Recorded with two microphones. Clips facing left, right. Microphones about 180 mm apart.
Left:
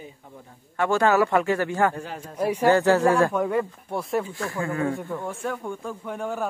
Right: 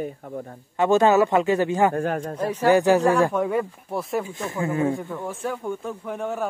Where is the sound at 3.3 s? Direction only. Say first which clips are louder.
Right 1 dB; 5° right (ahead or behind).